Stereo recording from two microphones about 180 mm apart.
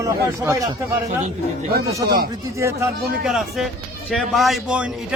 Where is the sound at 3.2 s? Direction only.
Centre (ahead or behind).